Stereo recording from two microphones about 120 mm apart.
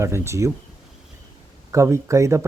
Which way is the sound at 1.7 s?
25° right (ahead or behind).